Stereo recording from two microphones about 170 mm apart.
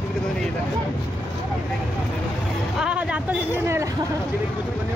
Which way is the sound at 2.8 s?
5° right (ahead or behind).